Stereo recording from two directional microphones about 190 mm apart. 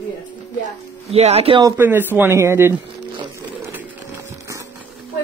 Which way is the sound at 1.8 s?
10° right (ahead or behind).